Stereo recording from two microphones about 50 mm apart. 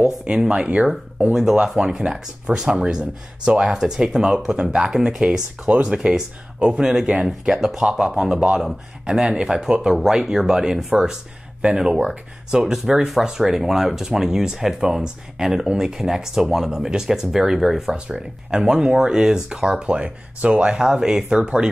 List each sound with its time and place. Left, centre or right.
0.0 s speech: centre
5.7 s speech: right
8.5 s speech: centre
17.9 s speech: centre